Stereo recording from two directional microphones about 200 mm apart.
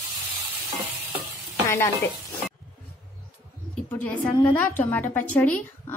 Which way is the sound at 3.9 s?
10° left (ahead or behind).